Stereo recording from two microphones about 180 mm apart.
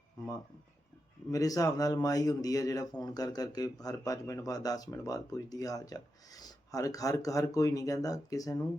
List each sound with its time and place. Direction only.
1.3 s speech: 20° left (ahead or behind)